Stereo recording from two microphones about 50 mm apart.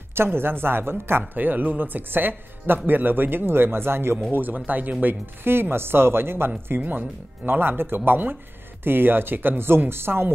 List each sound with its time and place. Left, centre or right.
0.1 s speech: right
1.3 s speech: right
4.3 s speech: right
5.0 s speech: right
6.8 s speech: right